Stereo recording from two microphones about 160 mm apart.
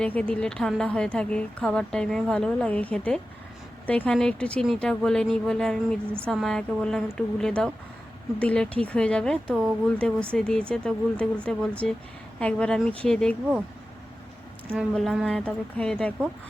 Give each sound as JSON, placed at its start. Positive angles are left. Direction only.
{"t": 0.0, "sound": "a woman's voice", "side_deg": 10}
{"t": 14.9, "sound": "a woman's voice", "side_deg": 0}